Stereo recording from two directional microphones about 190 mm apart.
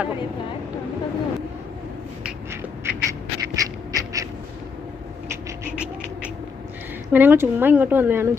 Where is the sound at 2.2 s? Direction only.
15° right (ahead or behind).